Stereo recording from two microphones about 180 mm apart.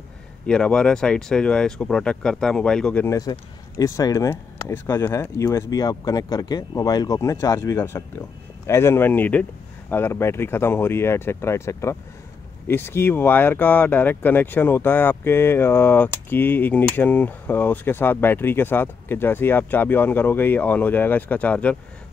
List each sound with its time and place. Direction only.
0.5 s speech: 5° left (ahead or behind)